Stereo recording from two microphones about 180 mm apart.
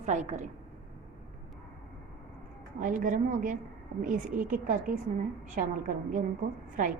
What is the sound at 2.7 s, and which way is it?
A woman's voice, 45° right (ahead or behind).